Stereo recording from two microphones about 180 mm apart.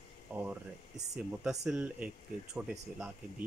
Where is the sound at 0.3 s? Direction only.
10° right (ahead or behind).